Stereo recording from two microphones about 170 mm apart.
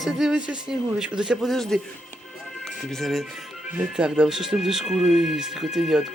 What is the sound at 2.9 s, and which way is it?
Speech, centre (ahead or behind).